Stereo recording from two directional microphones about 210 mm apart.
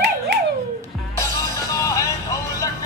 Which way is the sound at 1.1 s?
15° left (ahead or behind).